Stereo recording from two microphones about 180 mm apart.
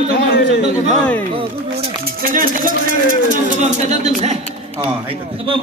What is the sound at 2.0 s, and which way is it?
Music, 50° right (ahead or behind).